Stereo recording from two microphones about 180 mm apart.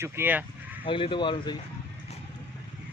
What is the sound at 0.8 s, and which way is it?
Speech, 30° left (ahead or behind).